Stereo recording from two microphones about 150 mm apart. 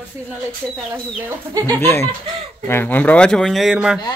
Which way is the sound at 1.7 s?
15° left (ahead or behind).